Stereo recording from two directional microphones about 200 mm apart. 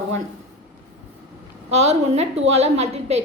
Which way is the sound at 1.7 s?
35° right (ahead or behind).